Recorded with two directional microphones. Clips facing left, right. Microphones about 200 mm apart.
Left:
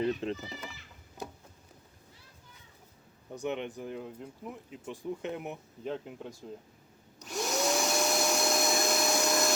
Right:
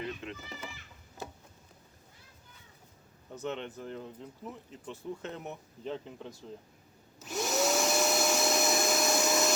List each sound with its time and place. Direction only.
0.0 s speech: 35° left (ahead or behind)
3.3 s speech: 15° left (ahead or behind)
7.2 s vacuum cleaner: centre (ahead or behind)